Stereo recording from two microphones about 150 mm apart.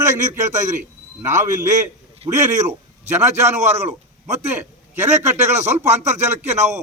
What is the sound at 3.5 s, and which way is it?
Speech, 45° right (ahead or behind).